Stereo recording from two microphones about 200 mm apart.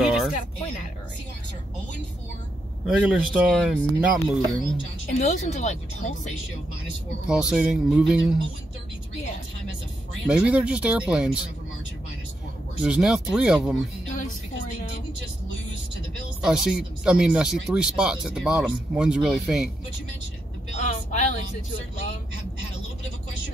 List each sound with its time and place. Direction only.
0.0 s a sound: 5° right (ahead or behind)
3.0 s speech: 5° right (ahead or behind)
5.2 s speech: 35° left (ahead or behind)
7.2 s speech: 5° right (ahead or behind)
10.2 s speech: 5° right (ahead or behind)
12.8 s speech: 5° right (ahead or behind)
14.1 s speech: 40° left (ahead or behind)
16.3 s speech: 5° right (ahead or behind)
20.7 s a woman's voice: 35° left (ahead or behind)